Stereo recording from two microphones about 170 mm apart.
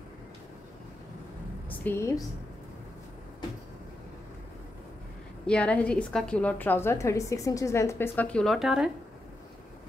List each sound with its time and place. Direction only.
1.7 s a woman's voice: 15° left (ahead or behind)
5.5 s a woman's voice: 10° left (ahead or behind)